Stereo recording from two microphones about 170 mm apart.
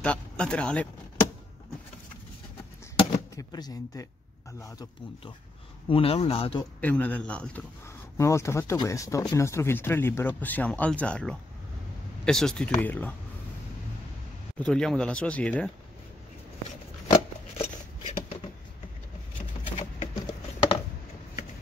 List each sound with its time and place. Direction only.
0.0 s speech: 5° left (ahead or behind)
3.3 s speech: 25° left (ahead or behind)
5.9 s speech: 35° left (ahead or behind)
6.8 s speech: 10° left (ahead or behind)
8.2 s speech: 15° left (ahead or behind)
14.6 s speech: 5° left (ahead or behind)
17.1 s shuffling cards: 35° left (ahead or behind)
20.0 s patter: 35° left (ahead or behind)